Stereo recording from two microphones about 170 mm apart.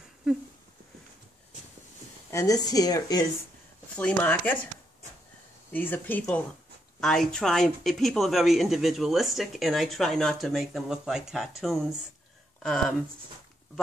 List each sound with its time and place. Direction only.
2.3 s a woman's voice: 20° left (ahead or behind)
3.9 s speech: 10° left (ahead or behind)
5.7 s speech: 10° left (ahead or behind)